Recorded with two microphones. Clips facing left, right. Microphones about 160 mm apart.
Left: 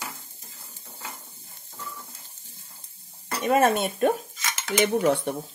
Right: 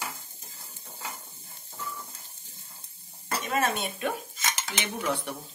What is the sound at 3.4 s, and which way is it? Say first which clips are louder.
Stir: left 9 dB; 50° left (ahead or behind).